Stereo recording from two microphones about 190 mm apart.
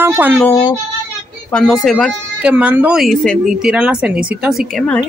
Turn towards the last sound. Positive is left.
turn(degrees=5)  # may be behind; listen again after turning